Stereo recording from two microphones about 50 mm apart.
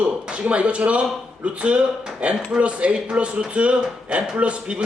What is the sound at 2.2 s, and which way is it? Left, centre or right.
Speech, right.